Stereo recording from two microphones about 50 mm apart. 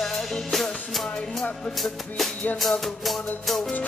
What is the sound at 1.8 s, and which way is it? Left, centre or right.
Drum kit, centre.